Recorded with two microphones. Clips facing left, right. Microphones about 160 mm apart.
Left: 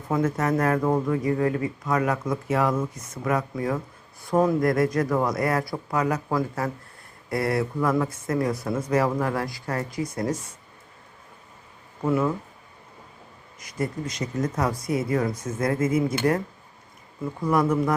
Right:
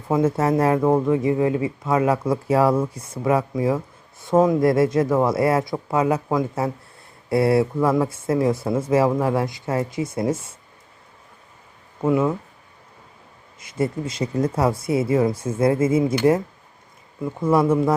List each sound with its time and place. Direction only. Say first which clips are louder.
0.1 s speech: right 4 dB; 25° right (ahead or behind)
12.0 s speech: right 4 dB; 20° right (ahead or behind)
13.6 s speech: right 5 dB; 25° right (ahead or behind)
17.4 s speech: right 4 dB; 25° right (ahead or behind)